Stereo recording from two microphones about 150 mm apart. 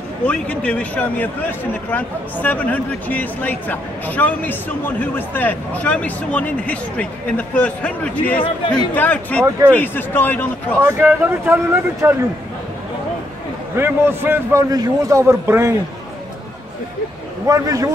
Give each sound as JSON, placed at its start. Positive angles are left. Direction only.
{"t": 0.2, "sound": "a man's voice", "side_deg": 10}
{"t": 10.8, "sound": "a man's voice", "side_deg": -15}
{"t": 13.7, "sound": "a man's voice", "side_deg": -15}
{"t": 17.5, "sound": "a man's voice", "side_deg": -25}